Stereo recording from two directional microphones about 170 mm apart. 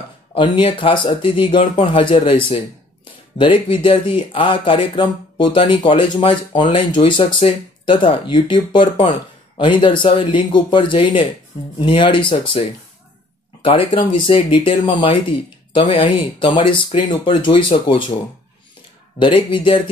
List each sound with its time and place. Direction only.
0.3 s speech: 30° left (ahead or behind)
19.1 s speech: 30° left (ahead or behind)